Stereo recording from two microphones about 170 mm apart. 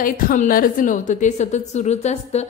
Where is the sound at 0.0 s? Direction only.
55° left (ahead or behind).